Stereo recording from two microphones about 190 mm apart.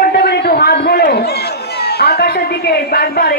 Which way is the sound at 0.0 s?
60° left (ahead or behind).